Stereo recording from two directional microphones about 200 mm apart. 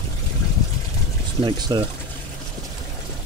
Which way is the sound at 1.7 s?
20° right (ahead or behind).